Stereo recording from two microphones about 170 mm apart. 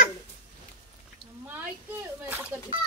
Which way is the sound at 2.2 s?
15° right (ahead or behind).